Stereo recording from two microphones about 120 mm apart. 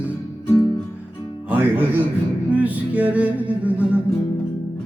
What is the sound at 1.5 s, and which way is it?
Music, 15° right (ahead or behind).